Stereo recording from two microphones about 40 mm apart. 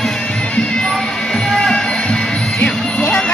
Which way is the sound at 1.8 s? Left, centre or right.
Left.